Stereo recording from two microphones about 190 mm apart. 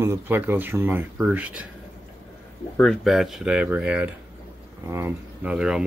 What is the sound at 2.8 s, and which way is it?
Speech, centre (ahead or behind).